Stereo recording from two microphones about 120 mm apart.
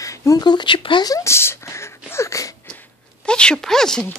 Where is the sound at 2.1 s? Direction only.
25° left (ahead or behind).